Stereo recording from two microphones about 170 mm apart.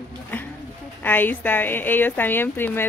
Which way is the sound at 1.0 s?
10° left (ahead or behind).